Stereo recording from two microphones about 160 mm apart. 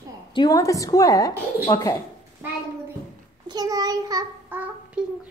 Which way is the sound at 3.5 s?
25° right (ahead or behind).